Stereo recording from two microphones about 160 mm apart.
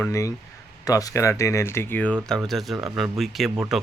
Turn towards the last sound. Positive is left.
turn(degrees=0)  # may be behind; listen again after turning